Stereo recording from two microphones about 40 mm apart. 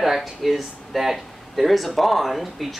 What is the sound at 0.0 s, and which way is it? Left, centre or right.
Speech, centre.